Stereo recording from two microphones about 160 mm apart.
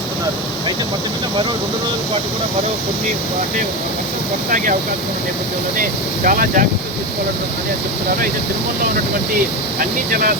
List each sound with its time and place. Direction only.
6.2 s speech: 60° right (ahead or behind)